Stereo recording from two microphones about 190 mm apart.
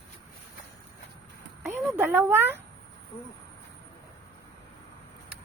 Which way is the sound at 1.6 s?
10° right (ahead or behind).